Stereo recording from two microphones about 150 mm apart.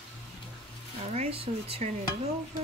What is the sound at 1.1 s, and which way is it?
Speech, 45° right (ahead or behind).